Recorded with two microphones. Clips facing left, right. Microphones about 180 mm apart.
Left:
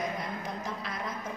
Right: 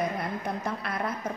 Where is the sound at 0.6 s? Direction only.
60° right (ahead or behind).